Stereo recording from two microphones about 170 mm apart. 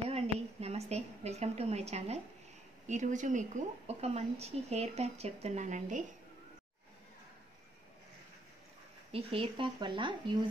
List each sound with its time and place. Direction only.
0.1 s a woman's voice: 40° right (ahead or behind)
9.1 s speech: 35° right (ahead or behind)